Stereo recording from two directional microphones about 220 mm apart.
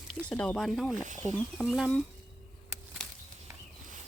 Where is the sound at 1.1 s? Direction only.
35° right (ahead or behind).